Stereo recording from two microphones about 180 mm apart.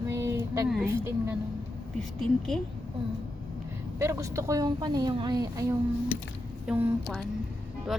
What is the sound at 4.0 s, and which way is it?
Speech, 15° right (ahead or behind).